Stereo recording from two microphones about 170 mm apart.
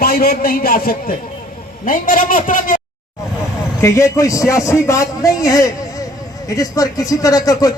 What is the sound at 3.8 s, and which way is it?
A man's voice, 20° left (ahead or behind).